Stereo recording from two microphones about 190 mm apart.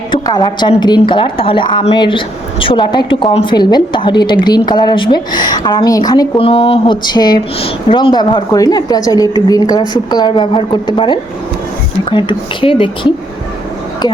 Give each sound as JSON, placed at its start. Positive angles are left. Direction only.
{"t": 0.1, "sound": "a woman's voice", "side_deg": 20}